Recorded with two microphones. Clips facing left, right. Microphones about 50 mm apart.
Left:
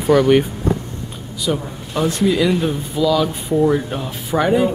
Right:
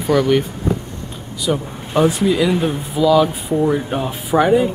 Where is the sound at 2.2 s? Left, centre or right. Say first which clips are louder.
Even; centre.